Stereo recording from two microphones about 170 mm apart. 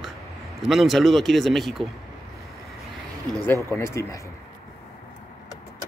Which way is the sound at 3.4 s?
10° left (ahead or behind).